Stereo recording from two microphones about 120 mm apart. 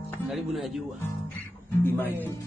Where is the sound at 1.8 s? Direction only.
15° left (ahead or behind).